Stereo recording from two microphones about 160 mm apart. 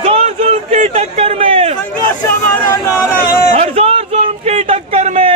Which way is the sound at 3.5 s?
40° right (ahead or behind).